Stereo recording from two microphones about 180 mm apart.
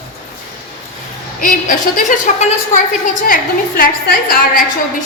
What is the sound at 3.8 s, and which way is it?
Speech, 55° left (ahead or behind).